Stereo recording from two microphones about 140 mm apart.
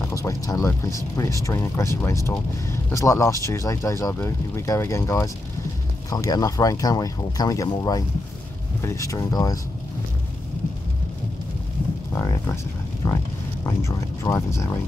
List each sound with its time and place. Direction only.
0.1 s speech: 25° left (ahead or behind)
12.1 s a sound: 20° left (ahead or behind)
13.0 s speech: 25° left (ahead or behind)